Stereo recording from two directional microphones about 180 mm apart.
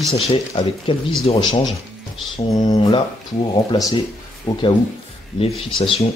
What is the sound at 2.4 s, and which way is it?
Speech, 20° left (ahead or behind).